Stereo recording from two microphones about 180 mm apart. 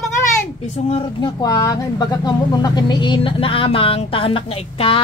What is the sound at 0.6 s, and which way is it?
Speech, 35° left (ahead or behind).